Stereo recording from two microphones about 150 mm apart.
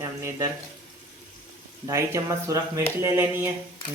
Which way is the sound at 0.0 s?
20° right (ahead or behind).